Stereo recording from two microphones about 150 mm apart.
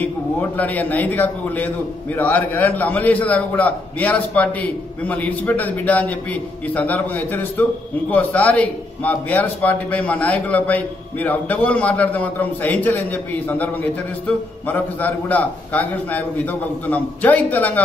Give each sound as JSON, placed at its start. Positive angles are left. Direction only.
{"t": 0.0, "sound": "a man's voice", "side_deg": 10}